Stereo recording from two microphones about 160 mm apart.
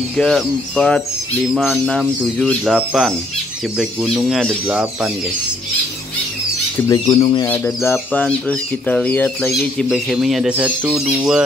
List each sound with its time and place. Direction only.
0.2 s speech: centre (ahead or behind)
6.8 s speech: 15° left (ahead or behind)
7.2 s speech: 30° left (ahead or behind)
7.4 s speech: 15° left (ahead or behind)
9.6 s speech: centre (ahead or behind)